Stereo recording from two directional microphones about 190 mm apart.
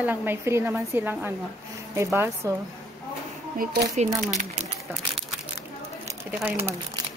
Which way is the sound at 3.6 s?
60° right (ahead or behind).